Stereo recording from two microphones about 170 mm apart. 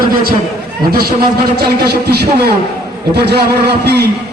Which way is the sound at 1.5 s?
70° right (ahead or behind).